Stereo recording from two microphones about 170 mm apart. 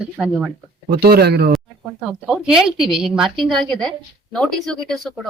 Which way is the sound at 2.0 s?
Centre (ahead or behind).